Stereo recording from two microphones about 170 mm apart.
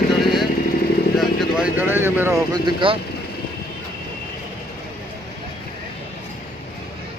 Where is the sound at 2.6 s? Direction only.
30° right (ahead or behind).